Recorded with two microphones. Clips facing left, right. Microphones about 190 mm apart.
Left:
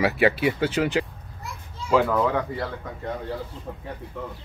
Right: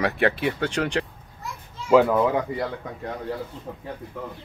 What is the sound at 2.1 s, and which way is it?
Speech, 20° right (ahead or behind).